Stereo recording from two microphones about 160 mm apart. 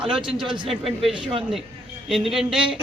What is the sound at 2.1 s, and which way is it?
Speech, centre (ahead or behind).